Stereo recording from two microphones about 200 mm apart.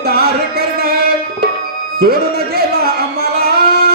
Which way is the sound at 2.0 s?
50° right (ahead or behind).